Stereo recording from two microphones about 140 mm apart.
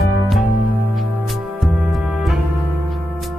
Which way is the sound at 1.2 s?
Centre (ahead or behind).